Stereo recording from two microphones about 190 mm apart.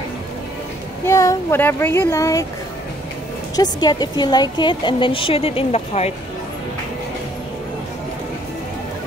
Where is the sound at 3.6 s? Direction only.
20° left (ahead or behind).